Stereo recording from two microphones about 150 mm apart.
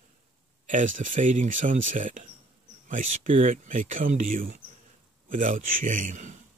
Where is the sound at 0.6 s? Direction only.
60° right (ahead or behind).